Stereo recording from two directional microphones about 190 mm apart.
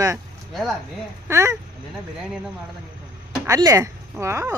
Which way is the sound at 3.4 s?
20° right (ahead or behind).